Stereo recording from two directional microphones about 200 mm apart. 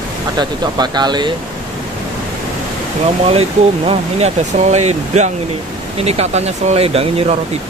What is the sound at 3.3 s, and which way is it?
Speech, 30° right (ahead or behind).